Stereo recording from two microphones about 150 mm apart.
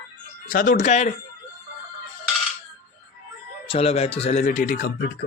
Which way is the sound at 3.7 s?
45° left (ahead or behind).